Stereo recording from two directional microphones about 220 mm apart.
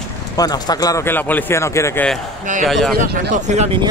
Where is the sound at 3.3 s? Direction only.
30° right (ahead or behind).